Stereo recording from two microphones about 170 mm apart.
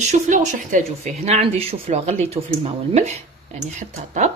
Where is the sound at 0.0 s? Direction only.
45° right (ahead or behind).